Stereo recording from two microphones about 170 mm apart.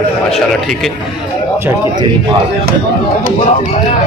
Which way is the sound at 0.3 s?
Centre (ahead or behind).